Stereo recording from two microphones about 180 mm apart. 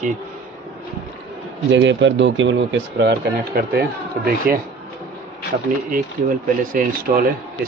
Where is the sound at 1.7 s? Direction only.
85° right; by 4.6 s 60° right (ahead or behind).